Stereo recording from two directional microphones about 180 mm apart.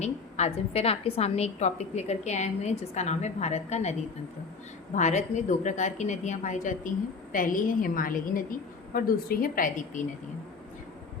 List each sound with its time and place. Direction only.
0.0 s a woman's voice: 40° left (ahead or behind)
4.9 s a woman's voice: 40° left (ahead or behind)